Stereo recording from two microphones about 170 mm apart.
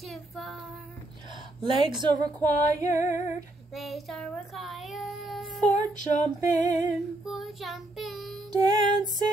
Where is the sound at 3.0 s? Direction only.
45° left (ahead or behind).